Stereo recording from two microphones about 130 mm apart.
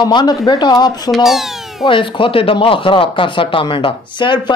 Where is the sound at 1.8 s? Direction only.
40° left (ahead or behind).